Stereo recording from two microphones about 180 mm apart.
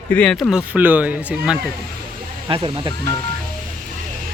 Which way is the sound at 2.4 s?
25° right (ahead or behind).